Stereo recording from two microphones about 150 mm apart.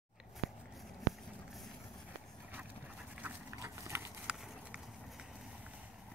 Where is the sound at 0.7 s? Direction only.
Centre (ahead or behind).